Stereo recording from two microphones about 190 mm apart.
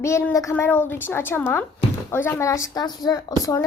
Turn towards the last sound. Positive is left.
turn(degrees=15)  # may be behind; listen again after turning